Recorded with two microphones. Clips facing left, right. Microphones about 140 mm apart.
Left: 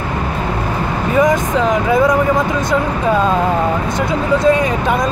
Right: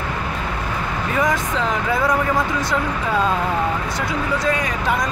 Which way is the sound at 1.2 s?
15° left (ahead or behind).